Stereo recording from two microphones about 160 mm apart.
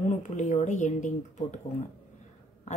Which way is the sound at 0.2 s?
50° left (ahead or behind).